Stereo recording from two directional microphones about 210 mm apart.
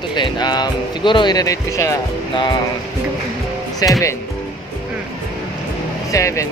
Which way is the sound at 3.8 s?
20° left (ahead or behind).